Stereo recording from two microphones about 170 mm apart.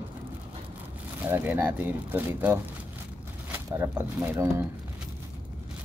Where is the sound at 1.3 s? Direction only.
10° right (ahead or behind).